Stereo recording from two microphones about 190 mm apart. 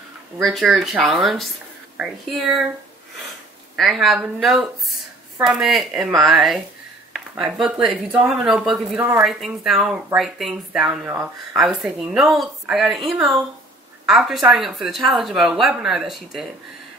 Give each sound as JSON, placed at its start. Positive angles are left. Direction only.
{"t": 0.4, "sound": "speech", "side_deg": 0}
{"t": 3.7, "sound": "speech", "side_deg": 0}